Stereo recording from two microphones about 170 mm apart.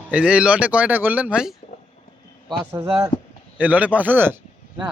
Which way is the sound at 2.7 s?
30° right (ahead or behind).